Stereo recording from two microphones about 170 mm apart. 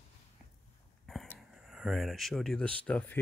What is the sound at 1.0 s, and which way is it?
Speech, centre (ahead or behind).